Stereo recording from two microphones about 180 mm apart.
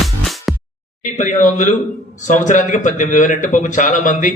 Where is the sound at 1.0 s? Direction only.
45° left (ahead or behind).